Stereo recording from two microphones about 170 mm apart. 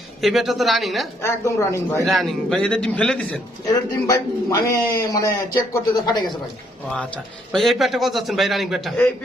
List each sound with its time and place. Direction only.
0.2 s a man's voice: centre (ahead or behind)
1.2 s speech: 15° left (ahead or behind)
2.0 s a man's voice: centre (ahead or behind)
3.6 s a man's voice: 20° left (ahead or behind)
7.5 s a man's voice: centre (ahead or behind)